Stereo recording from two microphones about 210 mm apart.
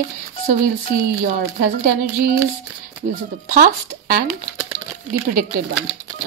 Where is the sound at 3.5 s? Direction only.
45° right (ahead or behind).